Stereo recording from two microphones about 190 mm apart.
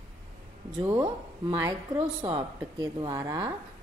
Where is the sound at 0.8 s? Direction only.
20° right (ahead or behind).